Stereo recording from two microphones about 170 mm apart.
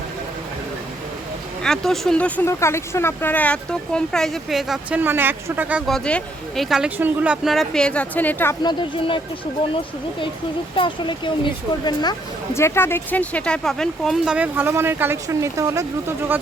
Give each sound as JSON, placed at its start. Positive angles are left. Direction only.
{"t": 1.6, "sound": "speech", "side_deg": 0}
{"t": 8.6, "sound": "speech", "side_deg": 30}
{"t": 10.8, "sound": "speech", "side_deg": 30}
{"t": 12.5, "sound": "speech", "side_deg": 15}